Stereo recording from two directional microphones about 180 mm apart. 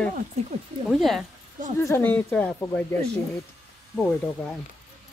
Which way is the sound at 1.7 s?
15° left (ahead or behind).